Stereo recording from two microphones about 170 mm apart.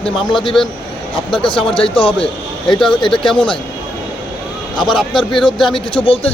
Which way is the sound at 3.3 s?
30° left (ahead or behind).